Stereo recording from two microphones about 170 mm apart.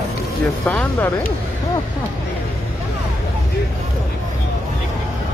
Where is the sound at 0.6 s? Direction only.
10° left (ahead or behind).